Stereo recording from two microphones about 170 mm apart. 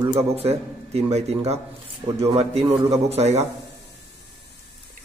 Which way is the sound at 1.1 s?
40° right (ahead or behind).